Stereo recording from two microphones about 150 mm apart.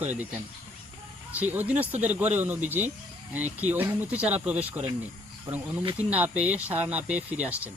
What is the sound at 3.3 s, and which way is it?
Speech, 10° right (ahead or behind).